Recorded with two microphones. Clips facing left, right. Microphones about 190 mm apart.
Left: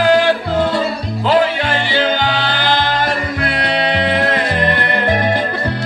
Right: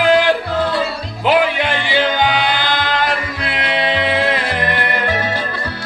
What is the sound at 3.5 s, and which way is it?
Music, 45° left (ahead or behind).